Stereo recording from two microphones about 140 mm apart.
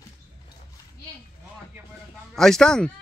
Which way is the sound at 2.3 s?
5° left (ahead or behind).